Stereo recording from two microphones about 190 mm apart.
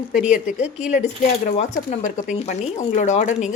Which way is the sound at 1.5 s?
40° left (ahead or behind).